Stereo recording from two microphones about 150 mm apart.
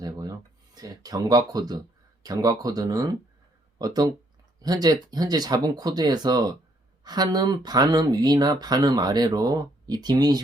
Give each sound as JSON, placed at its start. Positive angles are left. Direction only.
{"t": 0.0, "sound": "speech", "side_deg": -25}